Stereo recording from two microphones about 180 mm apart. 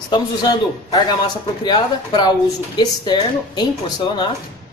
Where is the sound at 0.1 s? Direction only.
25° left (ahead or behind).